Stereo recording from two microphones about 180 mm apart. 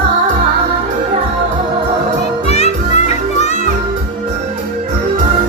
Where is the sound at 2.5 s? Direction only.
40° left (ahead or behind).